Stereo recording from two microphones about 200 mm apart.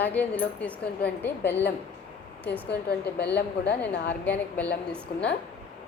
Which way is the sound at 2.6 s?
55° left (ahead or behind).